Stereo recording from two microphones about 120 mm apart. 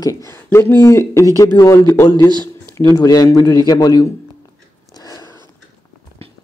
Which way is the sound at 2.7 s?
30° left (ahead or behind).